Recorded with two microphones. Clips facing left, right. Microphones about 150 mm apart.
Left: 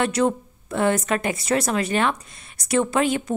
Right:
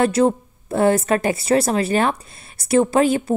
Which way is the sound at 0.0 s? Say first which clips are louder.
Right 4 dB; 30° right (ahead or behind).